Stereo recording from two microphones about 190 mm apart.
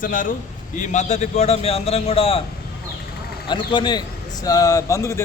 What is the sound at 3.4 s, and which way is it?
A man's voice, 25° left (ahead or behind).